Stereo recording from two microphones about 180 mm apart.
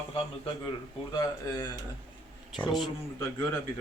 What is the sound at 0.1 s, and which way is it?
A man's voice, 30° left (ahead or behind).